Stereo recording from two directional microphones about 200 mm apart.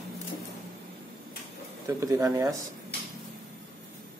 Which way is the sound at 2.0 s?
15° right (ahead or behind).